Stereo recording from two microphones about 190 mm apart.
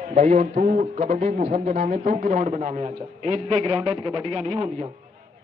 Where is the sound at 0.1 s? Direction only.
35° right (ahead or behind).